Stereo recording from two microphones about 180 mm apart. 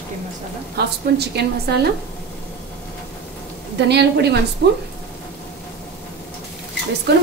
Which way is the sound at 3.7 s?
70° right (ahead or behind).